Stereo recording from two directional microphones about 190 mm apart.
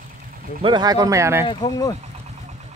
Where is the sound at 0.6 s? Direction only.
20° right (ahead or behind).